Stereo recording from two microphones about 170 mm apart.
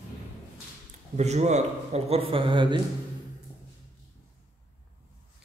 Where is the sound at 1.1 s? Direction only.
40° right (ahead or behind).